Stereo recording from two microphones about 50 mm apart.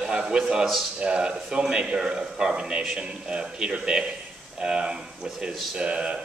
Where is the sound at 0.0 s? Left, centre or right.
Centre.